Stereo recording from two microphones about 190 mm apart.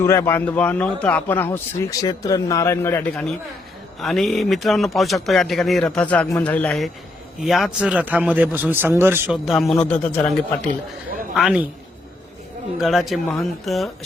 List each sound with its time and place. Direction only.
0.0 s a man's voice: 15° left (ahead or behind); by 9.4 s 10° right (ahead or behind)
9.5 s a man's voice: centre (ahead or behind)
11.3 s speech: 5° right (ahead or behind)
12.8 s speech: centre (ahead or behind)